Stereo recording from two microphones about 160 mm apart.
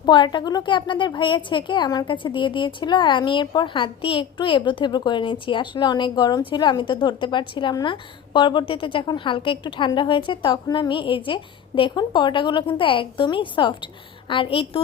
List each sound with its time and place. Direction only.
0.0 s a woman's voice: 30° left (ahead or behind)